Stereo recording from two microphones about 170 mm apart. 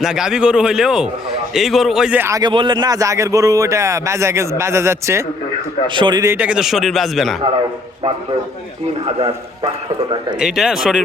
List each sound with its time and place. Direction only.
0.0 s a man's voice: 5° right (ahead or behind)
2.4 s a man's voice: 25° right (ahead or behind)
5.9 s a man's voice: 25° right (ahead or behind)
6.3 s a man's voice: 5° right (ahead or behind)
10.4 s a man's voice: 5° right (ahead or behind)